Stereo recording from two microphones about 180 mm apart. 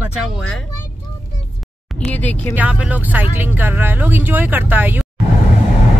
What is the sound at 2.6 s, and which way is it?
Speech, 10° right (ahead or behind).